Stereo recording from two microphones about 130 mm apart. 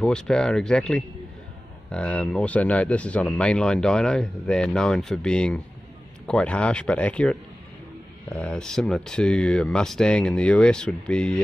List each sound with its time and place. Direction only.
0.0 s speech: 5° left (ahead or behind)